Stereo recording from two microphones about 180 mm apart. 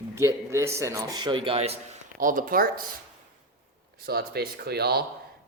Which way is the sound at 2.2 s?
50° right (ahead or behind).